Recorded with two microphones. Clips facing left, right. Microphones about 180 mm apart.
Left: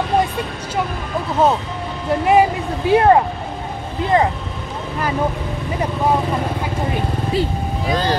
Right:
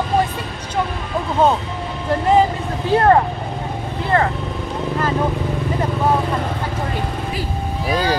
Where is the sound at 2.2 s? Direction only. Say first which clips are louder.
Left 1 dB; 15° left (ahead or behind).